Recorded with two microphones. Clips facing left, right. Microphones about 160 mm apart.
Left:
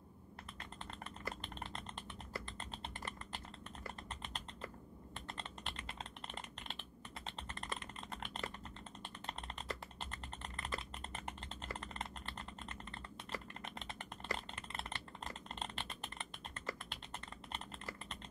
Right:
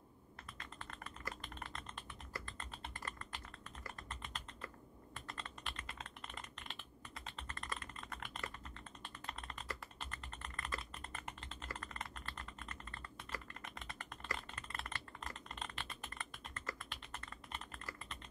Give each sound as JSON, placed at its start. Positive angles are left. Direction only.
{"t": 0.7, "sound": "typing", "side_deg": 25}
{"t": 5.1, "sound": "computer keyboard", "side_deg": 25}
{"t": 7.2, "sound": "typing", "side_deg": 25}